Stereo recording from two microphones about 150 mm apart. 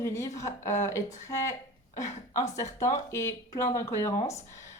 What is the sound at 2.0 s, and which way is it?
Speech, 55° left (ahead or behind).